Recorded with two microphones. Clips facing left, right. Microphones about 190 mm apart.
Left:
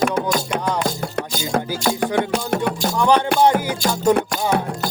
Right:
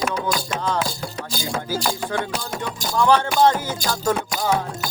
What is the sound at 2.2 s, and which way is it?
Music, 60° left (ahead or behind).